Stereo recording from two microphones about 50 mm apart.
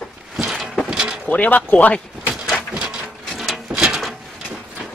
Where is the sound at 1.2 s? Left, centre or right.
Left.